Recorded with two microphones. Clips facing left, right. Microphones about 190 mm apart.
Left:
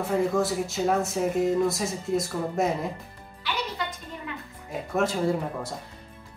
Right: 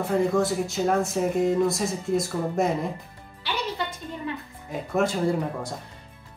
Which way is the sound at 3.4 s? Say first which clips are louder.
Right 1 dB; 30° right (ahead or behind).